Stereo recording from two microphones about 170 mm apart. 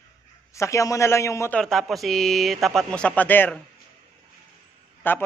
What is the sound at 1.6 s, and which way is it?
Speech, centre (ahead or behind).